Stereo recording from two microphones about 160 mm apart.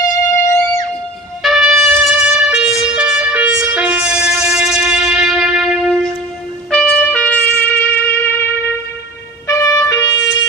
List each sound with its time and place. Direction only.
0.3 s music: 15° left (ahead or behind)
1.4 s trumpet: centre (ahead or behind); by 10.1 s 20° left (ahead or behind)